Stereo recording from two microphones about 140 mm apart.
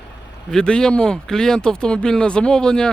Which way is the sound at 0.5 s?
5° left (ahead or behind).